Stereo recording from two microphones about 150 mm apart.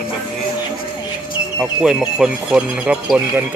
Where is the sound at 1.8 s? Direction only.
5° right (ahead or behind).